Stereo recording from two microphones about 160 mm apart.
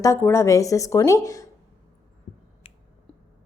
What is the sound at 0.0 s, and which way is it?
A woman's voice, 15° left (ahead or behind).